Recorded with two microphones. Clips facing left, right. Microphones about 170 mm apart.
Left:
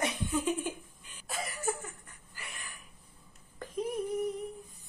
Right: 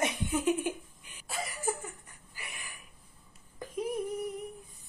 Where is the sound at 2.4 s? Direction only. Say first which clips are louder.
Even; 15° right (ahead or behind).